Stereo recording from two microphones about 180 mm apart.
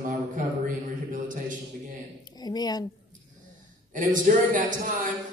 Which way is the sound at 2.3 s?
20° left (ahead or behind).